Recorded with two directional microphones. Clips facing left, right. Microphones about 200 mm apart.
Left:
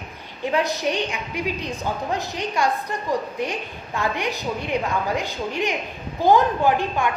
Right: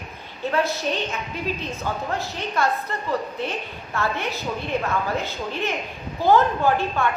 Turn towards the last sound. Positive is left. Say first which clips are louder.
# left 1 dB
turn(degrees=15)  # may be behind; listen again after turning